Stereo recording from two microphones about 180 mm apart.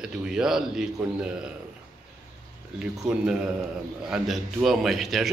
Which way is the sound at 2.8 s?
5° right (ahead or behind).